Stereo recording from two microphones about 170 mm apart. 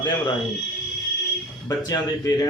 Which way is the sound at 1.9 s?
20° left (ahead or behind).